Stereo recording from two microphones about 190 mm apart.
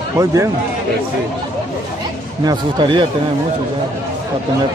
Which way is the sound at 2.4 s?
20° right (ahead or behind).